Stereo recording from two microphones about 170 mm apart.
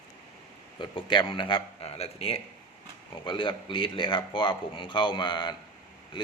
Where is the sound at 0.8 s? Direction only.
30° left (ahead or behind).